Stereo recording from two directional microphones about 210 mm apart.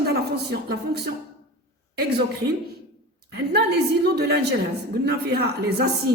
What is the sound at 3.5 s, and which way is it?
Speech, 50° right (ahead or behind).